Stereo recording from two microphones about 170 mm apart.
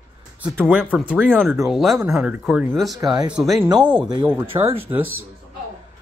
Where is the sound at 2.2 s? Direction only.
5° right (ahead or behind).